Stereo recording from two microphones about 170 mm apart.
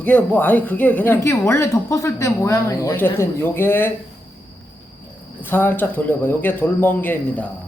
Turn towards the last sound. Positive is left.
turn(degrees=10)  # may be behind; listen again after turning